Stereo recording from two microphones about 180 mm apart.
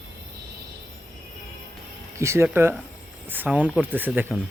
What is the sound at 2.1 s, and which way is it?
Speech, 15° right (ahead or behind).